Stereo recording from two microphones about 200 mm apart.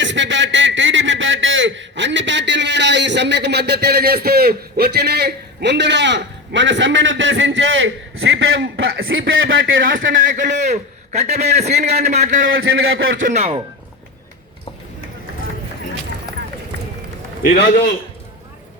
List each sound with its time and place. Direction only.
0.0 s a man's voice: 65° right (ahead or behind)
9.8 s a man's voice: 45° right (ahead or behind)
12.4 s a man's voice: 75° right (ahead or behind)
13.2 s a man's voice: 30° right (ahead or behind)